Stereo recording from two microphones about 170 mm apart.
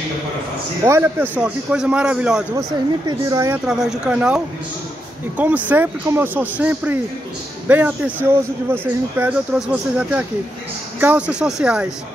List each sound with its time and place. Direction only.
0.8 s speech: 15° right (ahead or behind)
3.1 s speech: 20° right (ahead or behind)
3.6 s speech: 5° right (ahead or behind)
5.4 s speech: 10° right (ahead or behind)